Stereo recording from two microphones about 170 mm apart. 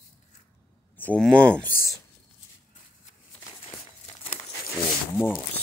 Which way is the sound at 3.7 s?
35° left (ahead or behind).